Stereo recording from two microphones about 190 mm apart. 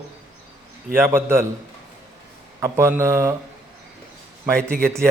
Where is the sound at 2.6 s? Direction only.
15° right (ahead or behind).